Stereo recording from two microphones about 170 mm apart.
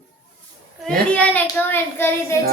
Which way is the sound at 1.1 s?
10° left (ahead or behind).